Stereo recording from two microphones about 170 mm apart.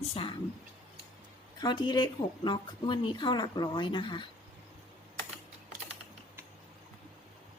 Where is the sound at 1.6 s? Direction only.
25° left (ahead or behind).